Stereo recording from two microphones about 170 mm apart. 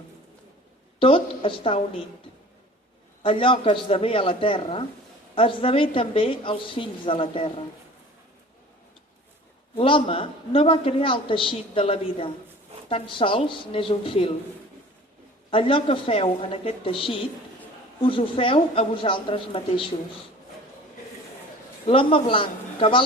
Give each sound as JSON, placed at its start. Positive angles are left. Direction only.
{"t": 0.9, "sound": "a woman's voice", "side_deg": 30}
{"t": 3.2, "sound": "a woman's voice", "side_deg": 30}
{"t": 9.7, "sound": "a woman's voice", "side_deg": 30}
{"t": 15.4, "sound": "a woman's voice", "side_deg": 35}
{"t": 21.8, "sound": "a woman's voice", "side_deg": 30}